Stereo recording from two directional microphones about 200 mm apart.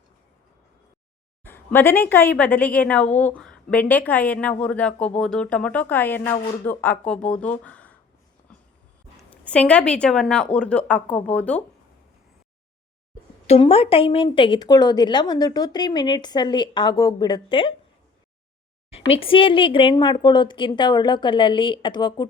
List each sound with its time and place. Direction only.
1.5 s a woman's voice: 10° left (ahead or behind)
9.3 s a woman's voice: 5° left (ahead or behind)
13.5 s a woman's voice: 30° left (ahead or behind)
18.9 s a woman's voice: 30° left (ahead or behind)